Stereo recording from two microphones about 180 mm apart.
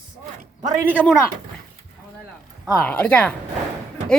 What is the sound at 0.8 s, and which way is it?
Speech, 10° right (ahead or behind).